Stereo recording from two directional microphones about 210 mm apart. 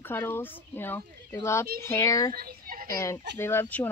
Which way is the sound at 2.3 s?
45° right (ahead or behind).